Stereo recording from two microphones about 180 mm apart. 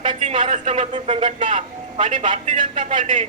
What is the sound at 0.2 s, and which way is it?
A man's voice, 40° right (ahead or behind).